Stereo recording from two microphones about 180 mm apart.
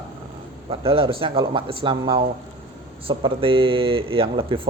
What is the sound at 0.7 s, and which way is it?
Speech, 30° right (ahead or behind).